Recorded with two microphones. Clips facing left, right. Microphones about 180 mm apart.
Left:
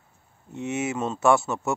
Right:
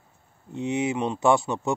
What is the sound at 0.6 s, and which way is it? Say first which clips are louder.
Speech: right 2 dB; 15° right (ahead or behind).